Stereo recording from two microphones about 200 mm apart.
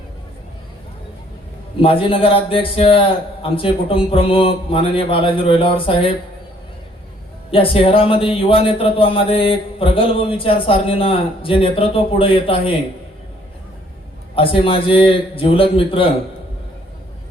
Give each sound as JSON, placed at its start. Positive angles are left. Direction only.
{"t": 1.8, "sound": "speech", "side_deg": 25}
{"t": 7.5, "sound": "speech", "side_deg": 25}
{"t": 14.3, "sound": "speech", "side_deg": 25}